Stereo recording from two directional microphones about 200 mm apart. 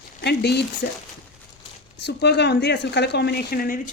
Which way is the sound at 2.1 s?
55° left (ahead or behind).